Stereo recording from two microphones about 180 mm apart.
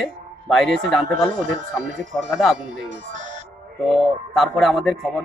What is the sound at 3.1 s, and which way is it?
Music, 45° right (ahead or behind).